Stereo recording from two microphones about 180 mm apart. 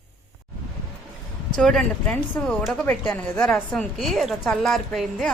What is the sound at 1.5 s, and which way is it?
Speech, 5° left (ahead or behind).